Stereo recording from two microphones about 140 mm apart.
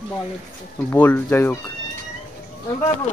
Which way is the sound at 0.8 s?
15° left (ahead or behind).